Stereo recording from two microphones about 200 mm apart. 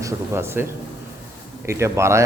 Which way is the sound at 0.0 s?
10° right (ahead or behind).